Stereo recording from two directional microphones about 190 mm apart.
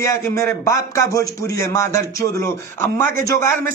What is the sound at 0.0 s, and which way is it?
A man's voice, 15° left (ahead or behind).